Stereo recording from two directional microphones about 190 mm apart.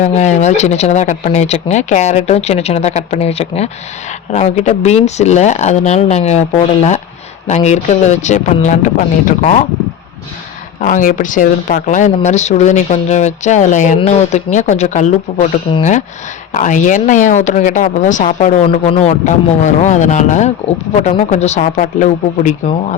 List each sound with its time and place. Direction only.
0.0 s speech: 40° left (ahead or behind)
10.8 s speech: 45° left (ahead or behind)